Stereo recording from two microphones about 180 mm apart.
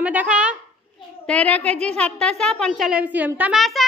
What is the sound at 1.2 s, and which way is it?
A woman's voice, 5° left (ahead or behind).